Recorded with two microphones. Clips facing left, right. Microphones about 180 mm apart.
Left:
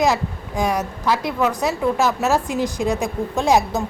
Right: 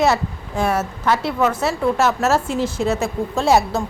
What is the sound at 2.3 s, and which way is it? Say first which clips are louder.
Speech: right 1 dB; 15° left (ahead or behind).